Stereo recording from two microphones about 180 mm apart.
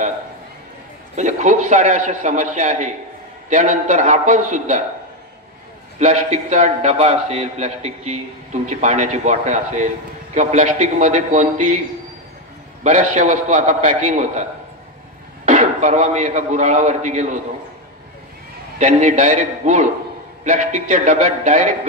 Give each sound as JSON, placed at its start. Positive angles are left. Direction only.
{"t": 1.1, "sound": "a man's voice", "side_deg": -40}
{"t": 5.9, "sound": "a man's voice", "side_deg": -40}
{"t": 12.8, "sound": "a man's voice", "side_deg": -45}
{"t": 15.4, "sound": "a man's voice", "side_deg": -45}
{"t": 18.8, "sound": "a man's voice", "side_deg": -40}